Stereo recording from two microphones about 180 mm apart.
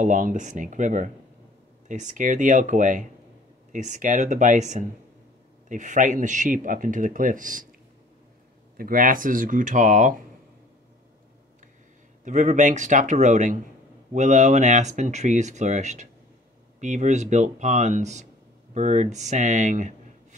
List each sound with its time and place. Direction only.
0.0 s speech: 45° right (ahead or behind)
8.7 s speech: 50° right (ahead or behind)
12.3 s speech: 40° right (ahead or behind)